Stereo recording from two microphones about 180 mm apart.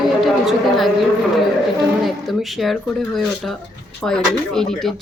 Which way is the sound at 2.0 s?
Centre (ahead or behind).